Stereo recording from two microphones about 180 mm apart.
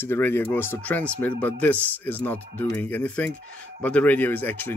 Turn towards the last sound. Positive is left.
turn(degrees=10)  # may be behind; listen again after turning